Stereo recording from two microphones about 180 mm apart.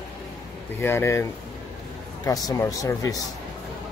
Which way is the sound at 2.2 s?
20° left (ahead or behind).